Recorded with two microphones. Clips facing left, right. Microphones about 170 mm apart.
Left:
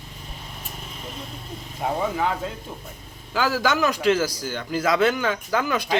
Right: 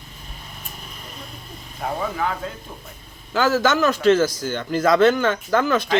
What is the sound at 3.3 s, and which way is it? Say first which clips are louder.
A man's voice: right 4 dB; 10° left (ahead or behind).